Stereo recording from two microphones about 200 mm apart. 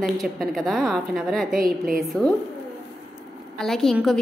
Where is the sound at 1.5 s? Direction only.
45° right (ahead or behind).